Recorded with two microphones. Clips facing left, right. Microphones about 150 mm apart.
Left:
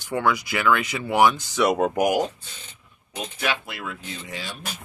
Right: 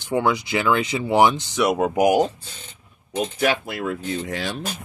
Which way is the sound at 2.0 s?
25° right (ahead or behind).